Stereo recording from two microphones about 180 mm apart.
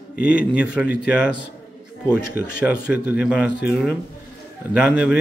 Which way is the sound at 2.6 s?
5° right (ahead or behind).